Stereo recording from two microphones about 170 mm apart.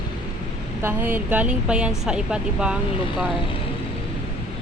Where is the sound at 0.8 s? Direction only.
10° right (ahead or behind).